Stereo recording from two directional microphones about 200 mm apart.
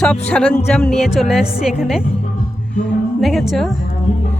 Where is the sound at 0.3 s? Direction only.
5° left (ahead or behind).